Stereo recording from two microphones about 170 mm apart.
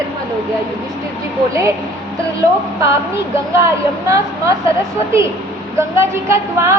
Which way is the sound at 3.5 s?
15° right (ahead or behind).